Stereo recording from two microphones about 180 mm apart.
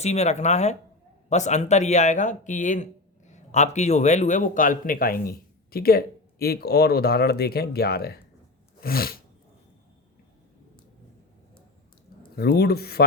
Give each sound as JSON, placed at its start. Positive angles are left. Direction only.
{"t": 0.0, "sound": "speech", "side_deg": 40}
{"t": 8.8, "sound": "sneeze", "side_deg": 55}
{"t": 12.4, "sound": "speech", "side_deg": 60}